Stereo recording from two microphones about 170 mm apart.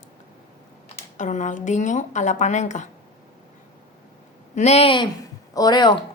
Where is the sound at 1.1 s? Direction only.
45° left (ahead or behind).